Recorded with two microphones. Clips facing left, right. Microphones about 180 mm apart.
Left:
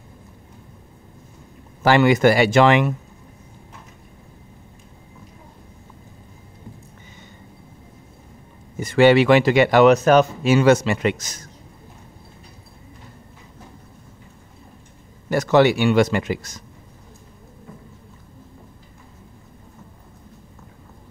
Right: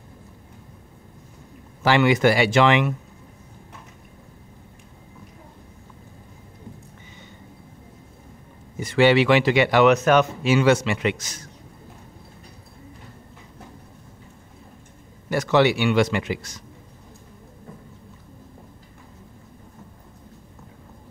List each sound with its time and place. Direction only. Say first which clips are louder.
1.8 s speech: left 3 dB; 45° left (ahead or behind)
8.7 s speech: left 3 dB; 45° left (ahead or behind)
15.2 s speech: left 3 dB; 45° left (ahead or behind)